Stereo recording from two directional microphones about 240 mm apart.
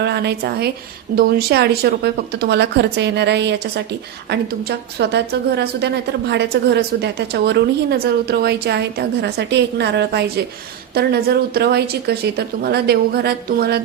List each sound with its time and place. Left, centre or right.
0.0 s a woman's voice: right